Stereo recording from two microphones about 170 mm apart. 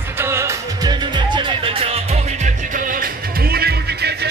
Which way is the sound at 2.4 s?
55° right (ahead or behind).